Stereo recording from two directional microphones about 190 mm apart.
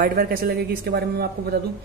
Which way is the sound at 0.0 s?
50° right (ahead or behind).